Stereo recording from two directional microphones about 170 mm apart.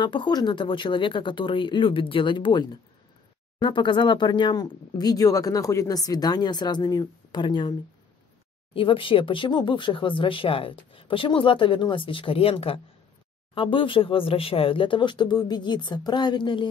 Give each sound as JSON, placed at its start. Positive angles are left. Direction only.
{"t": 0.0, "sound": "speech", "side_deg": 25}
{"t": 8.7, "sound": "speech", "side_deg": 30}